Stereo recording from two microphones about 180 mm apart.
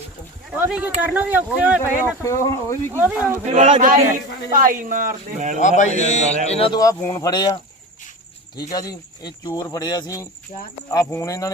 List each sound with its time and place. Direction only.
0.5 s speech: 5° right (ahead or behind)
2.2 s speech: 15° left (ahead or behind)
2.9 s speech: 10° right (ahead or behind)
3.4 s speech: 40° right (ahead or behind)
5.5 s a man's voice: 40° left (ahead or behind)
6.7 s speech: 15° left (ahead or behind)
8.7 s speech: 20° left (ahead or behind)